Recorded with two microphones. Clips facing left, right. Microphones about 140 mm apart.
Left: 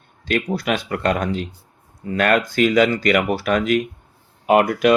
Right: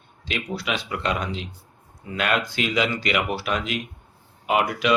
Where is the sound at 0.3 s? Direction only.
50° left (ahead or behind).